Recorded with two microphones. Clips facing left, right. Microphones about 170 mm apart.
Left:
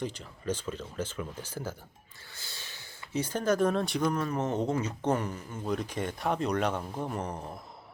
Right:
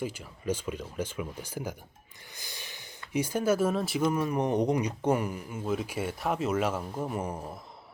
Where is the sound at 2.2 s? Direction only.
15° right (ahead or behind).